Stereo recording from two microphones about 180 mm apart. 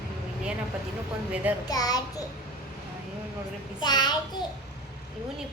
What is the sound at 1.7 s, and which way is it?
Speech, 20° left (ahead or behind).